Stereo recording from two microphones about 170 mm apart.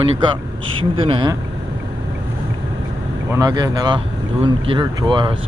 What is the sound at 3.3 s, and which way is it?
Speech, 20° right (ahead or behind).